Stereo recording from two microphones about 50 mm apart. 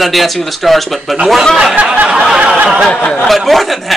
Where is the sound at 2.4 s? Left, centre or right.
Right.